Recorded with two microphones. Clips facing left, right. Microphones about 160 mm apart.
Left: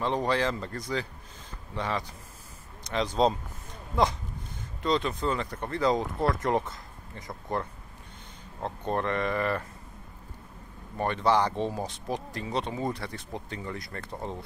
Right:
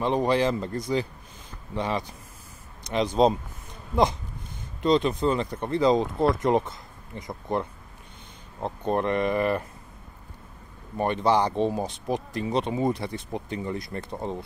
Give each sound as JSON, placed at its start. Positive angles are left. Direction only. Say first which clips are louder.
{"t": 0.0, "sound": "speech", "louder": "right 4 dB", "side_deg": -15}
{"t": 11.0, "sound": "speech", "louder": "right 2 dB", "side_deg": -15}